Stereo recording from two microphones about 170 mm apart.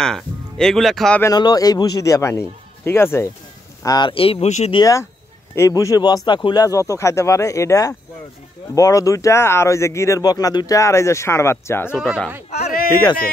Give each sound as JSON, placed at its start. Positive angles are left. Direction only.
{"t": 0.0, "sound": "speech", "side_deg": 5}
{"t": 1.2, "sound": "speech", "side_deg": 25}
{"t": 3.8, "sound": "speech", "side_deg": 25}
{"t": 4.7, "sound": "speech", "side_deg": 20}
{"t": 12.0, "sound": "speech", "side_deg": 0}
{"t": 12.4, "sound": "a sound", "side_deg": 50}
{"t": 12.9, "sound": "speech", "side_deg": 20}